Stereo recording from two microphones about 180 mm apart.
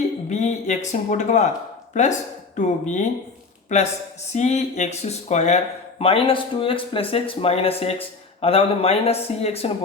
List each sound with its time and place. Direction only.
0.3 s speech: 40° left (ahead or behind)